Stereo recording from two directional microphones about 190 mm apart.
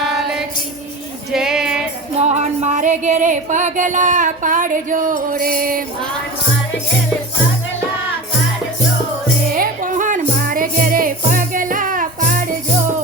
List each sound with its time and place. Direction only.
0.0 s music: centre (ahead or behind)
2.2 s music: 35° right (ahead or behind)
9.6 s music: 45° right (ahead or behind)